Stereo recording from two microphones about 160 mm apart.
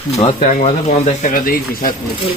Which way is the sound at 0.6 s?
45° left (ahead or behind).